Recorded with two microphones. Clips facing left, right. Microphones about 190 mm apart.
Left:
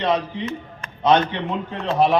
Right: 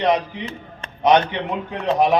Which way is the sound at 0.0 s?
15° right (ahead or behind).